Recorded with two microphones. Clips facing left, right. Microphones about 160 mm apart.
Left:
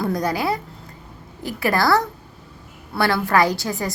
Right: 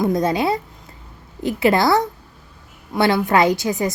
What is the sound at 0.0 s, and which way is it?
A woman's voice, 25° right (ahead or behind).